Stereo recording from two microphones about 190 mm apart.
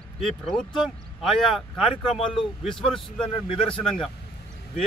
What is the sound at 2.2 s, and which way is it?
Speech, 25° left (ahead or behind).